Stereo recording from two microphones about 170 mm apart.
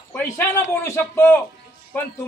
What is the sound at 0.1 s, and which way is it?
A man's voice, 15° left (ahead or behind).